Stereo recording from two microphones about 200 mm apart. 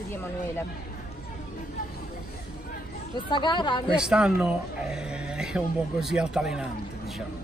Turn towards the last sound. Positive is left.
turn(degrees=-5)  # may be behind; listen again after turning